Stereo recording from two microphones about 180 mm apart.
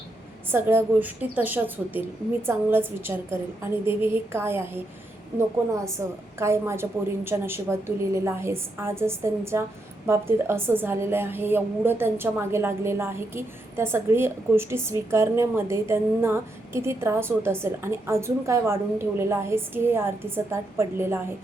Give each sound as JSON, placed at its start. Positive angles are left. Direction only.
{"t": 0.5, "sound": "a woman's voice", "side_deg": -10}
{"t": 6.0, "sound": "a woman's voice", "side_deg": -15}